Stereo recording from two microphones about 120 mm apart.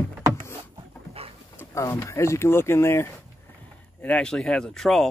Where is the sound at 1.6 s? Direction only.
20° left (ahead or behind).